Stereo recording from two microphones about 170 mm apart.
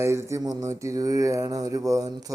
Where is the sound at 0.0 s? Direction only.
15° right (ahead or behind).